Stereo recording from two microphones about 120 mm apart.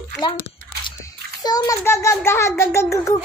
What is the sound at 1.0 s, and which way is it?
A child's voice, 30° left (ahead or behind).